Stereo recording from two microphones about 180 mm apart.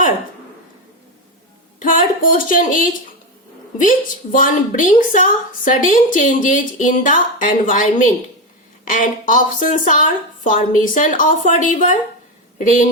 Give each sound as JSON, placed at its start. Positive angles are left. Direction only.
{"t": 1.8, "sound": "a woman's voice", "side_deg": 50}